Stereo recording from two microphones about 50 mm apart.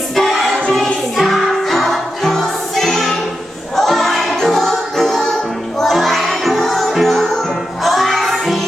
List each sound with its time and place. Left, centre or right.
0.2 s choir: centre
1.1 s music: centre